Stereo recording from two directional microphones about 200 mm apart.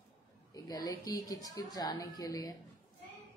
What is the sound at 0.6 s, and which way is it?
A woman's voice, 20° left (ahead or behind).